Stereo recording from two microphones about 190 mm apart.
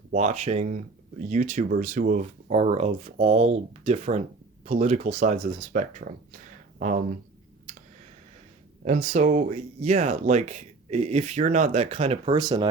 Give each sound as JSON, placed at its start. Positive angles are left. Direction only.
{"t": 0.1, "sound": "speech", "side_deg": -35}
{"t": 7.7, "sound": "a sound", "side_deg": -35}
{"t": 9.0, "sound": "speech", "side_deg": -40}